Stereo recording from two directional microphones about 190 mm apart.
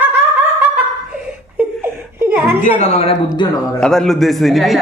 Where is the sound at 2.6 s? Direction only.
35° left (ahead or behind).